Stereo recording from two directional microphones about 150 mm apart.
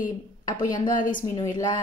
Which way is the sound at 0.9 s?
60° left (ahead or behind).